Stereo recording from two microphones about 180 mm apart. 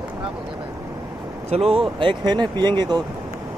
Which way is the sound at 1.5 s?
35° right (ahead or behind).